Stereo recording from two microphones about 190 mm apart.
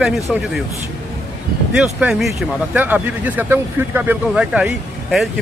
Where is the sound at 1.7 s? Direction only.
5° right (ahead or behind).